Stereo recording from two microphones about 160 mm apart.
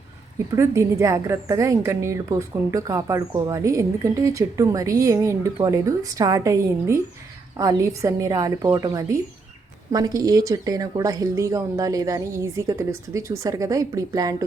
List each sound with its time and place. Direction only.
0.5 s speech: 20° right (ahead or behind)